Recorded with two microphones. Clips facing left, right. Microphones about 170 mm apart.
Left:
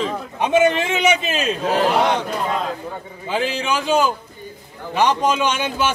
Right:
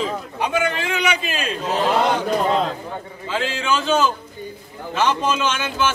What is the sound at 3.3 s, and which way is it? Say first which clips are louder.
A man's voice: left 1 dB; 15° left (ahead or behind).